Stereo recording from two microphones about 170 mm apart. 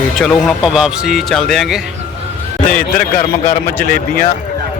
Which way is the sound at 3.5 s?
55° left (ahead or behind).